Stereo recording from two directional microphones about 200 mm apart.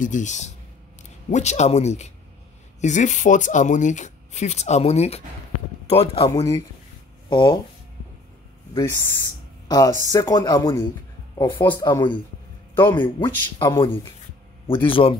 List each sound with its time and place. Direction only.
0.0 s speech: 40° left (ahead or behind)
8.7 s speech: 15° left (ahead or behind)
14.9 s speech: 25° left (ahead or behind)